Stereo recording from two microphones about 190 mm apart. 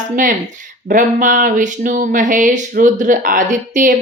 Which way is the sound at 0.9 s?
45° right (ahead or behind).